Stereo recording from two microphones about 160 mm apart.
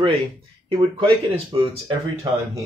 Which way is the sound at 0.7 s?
30° right (ahead or behind).